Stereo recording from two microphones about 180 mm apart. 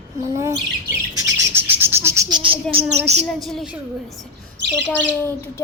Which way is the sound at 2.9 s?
35° right (ahead or behind).